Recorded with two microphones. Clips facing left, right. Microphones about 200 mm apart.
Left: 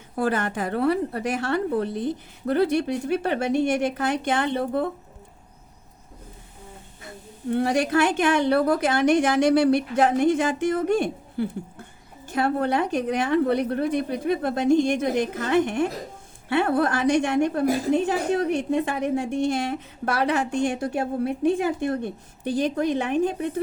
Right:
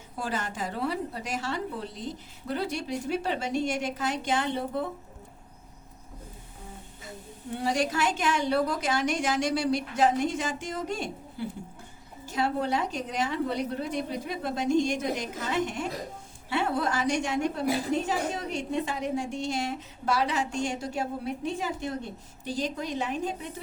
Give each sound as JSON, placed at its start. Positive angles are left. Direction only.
{"t": 0.2, "sound": "a woman's voice", "side_deg": 60}
{"t": 7.5, "sound": "a woman's voice", "side_deg": 60}